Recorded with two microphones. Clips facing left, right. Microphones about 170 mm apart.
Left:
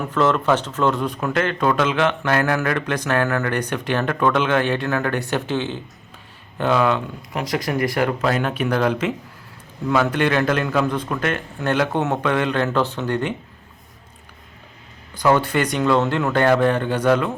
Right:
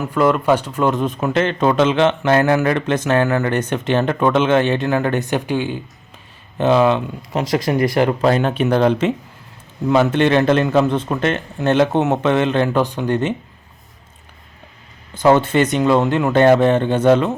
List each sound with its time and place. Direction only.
0.0 s speech: 10° right (ahead or behind)
15.1 s speech: 25° right (ahead or behind)